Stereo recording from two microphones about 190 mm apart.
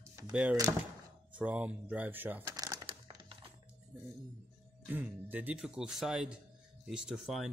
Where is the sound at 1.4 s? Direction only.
5° right (ahead or behind).